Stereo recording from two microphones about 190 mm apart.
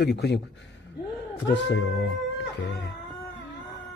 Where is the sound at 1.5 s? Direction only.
70° left (ahead or behind).